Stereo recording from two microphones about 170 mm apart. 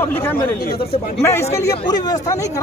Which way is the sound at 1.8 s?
25° left (ahead or behind).